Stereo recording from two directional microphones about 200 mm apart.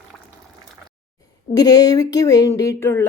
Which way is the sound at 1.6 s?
20° left (ahead or behind).